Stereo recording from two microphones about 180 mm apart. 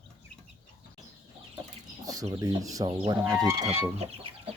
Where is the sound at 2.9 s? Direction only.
30° right (ahead or behind).